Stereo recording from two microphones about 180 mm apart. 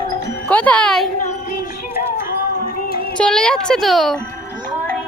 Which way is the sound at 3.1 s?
5° left (ahead or behind).